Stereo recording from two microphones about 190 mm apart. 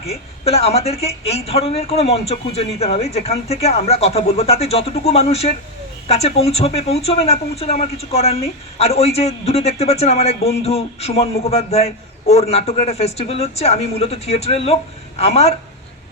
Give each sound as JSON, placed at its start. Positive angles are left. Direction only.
{"t": 0.1, "sound": "speech", "side_deg": 30}